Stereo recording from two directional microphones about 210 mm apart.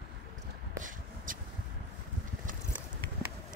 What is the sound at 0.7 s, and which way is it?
Shuffle, 40° right (ahead or behind).